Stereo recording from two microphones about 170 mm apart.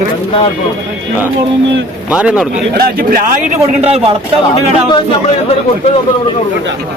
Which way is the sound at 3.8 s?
35° right (ahead or behind).